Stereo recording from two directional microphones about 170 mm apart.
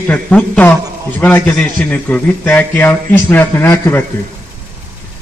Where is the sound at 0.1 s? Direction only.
5° left (ahead or behind).